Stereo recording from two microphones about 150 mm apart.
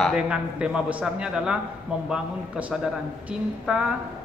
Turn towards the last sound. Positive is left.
turn(degrees=-5)  # may be behind; listen again after turning